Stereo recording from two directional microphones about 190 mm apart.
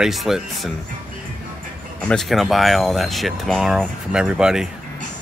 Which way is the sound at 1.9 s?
5° left (ahead or behind).